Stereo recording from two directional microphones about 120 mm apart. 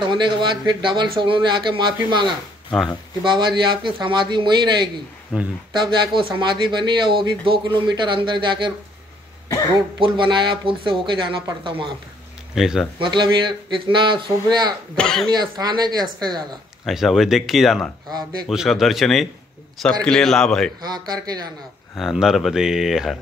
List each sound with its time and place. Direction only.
0.0 s speech: 40° right (ahead or behind)
2.2 s speech: centre (ahead or behind)
3.3 s speech: 40° right (ahead or behind)
5.3 s speech: 5° right (ahead or behind)
5.7 s speech: 40° right (ahead or behind)
9.9 s speech: 45° right (ahead or behind)
12.5 s speech: centre (ahead or behind)
13.0 s speech: 40° right (ahead or behind)
15.0 s speech: 5° left (ahead or behind)
15.6 s speech: 35° right (ahead or behind)
16.8 s speech: centre (ahead or behind)
20.8 s speech: 35° right (ahead or behind)
21.9 s speech: 5° right (ahead or behind)